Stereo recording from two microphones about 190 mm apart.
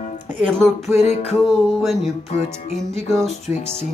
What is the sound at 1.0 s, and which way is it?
Music, 35° left (ahead or behind).